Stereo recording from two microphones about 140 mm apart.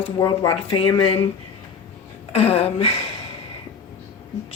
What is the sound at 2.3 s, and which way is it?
Speech, 45° left (ahead or behind).